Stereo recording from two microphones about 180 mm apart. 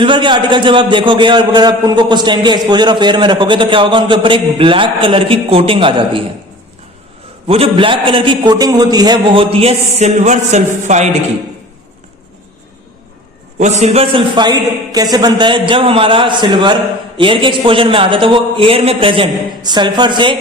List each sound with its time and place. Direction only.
0.0 s a man's voice: 25° right (ahead or behind)
7.4 s a man's voice: 30° right (ahead or behind)
13.6 s a man's voice: 40° right (ahead or behind)